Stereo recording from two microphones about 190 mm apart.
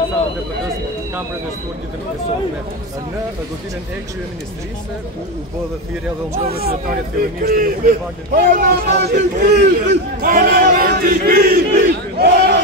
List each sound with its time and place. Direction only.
7.2 s a man's voice: 50° right (ahead or behind)
10.2 s a man's voice: 50° right (ahead or behind)